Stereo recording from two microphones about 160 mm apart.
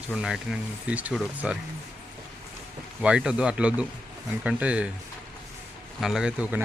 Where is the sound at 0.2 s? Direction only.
5° right (ahead or behind).